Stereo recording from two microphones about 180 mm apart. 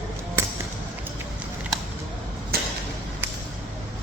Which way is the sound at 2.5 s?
60° right (ahead or behind).